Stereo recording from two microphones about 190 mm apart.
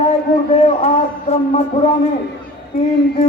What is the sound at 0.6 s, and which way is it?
Speech, 35° left (ahead or behind).